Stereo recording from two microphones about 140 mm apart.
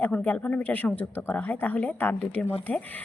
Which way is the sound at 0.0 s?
10° left (ahead or behind).